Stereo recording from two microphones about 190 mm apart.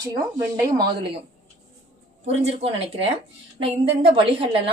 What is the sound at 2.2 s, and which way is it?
Speech, 35° right (ahead or behind).